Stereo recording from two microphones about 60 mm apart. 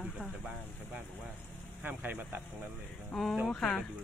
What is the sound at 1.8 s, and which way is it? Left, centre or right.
Speech, right.